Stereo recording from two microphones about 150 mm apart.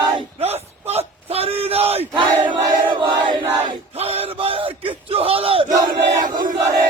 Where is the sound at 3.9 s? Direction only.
45° right (ahead or behind).